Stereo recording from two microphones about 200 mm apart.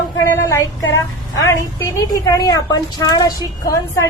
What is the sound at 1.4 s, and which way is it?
A woman's voice, 15° left (ahead or behind).